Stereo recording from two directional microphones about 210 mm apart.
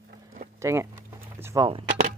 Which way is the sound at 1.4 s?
15° right (ahead or behind).